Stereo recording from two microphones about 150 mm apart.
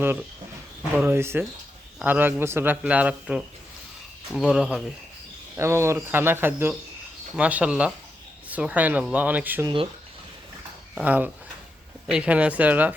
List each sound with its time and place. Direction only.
0.9 s speech: 15° right (ahead or behind)
5.5 s speech: 20° right (ahead or behind)
9.6 s speech: 30° right (ahead or behind)
10.9 s speech: 10° right (ahead or behind)